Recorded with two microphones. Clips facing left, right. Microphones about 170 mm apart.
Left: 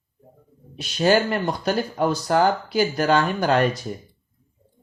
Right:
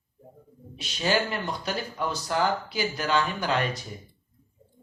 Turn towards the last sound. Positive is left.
turn(degrees=50)  # may be behind; listen again after turning